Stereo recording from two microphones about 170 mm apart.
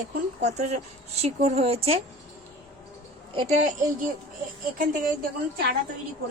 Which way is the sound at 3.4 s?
40° right (ahead or behind).